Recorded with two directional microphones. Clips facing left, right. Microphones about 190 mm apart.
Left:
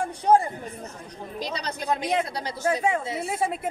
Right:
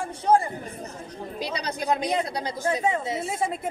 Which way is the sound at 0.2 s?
15° left (ahead or behind).